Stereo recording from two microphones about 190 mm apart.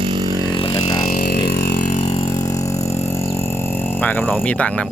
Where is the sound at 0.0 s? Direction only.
25° right (ahead or behind).